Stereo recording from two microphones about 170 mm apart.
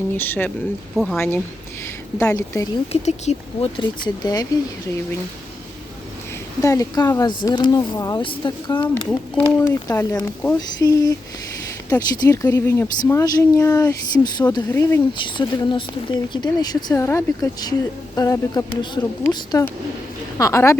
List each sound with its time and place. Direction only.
0.1 s speech: 10° left (ahead or behind)
0.9 s speech: centre (ahead or behind)
2.1 s speech: 15° left (ahead or behind)
2.9 s speech: 40° left (ahead or behind); by 4.4 s 25° left (ahead or behind)
6.6 s speech: 20° left (ahead or behind)
15.4 s speech: 30° left (ahead or behind)